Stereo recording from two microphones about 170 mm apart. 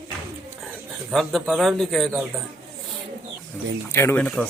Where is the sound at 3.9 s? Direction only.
15° left (ahead or behind).